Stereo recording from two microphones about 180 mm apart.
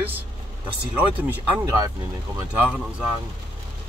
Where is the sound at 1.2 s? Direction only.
15° right (ahead or behind).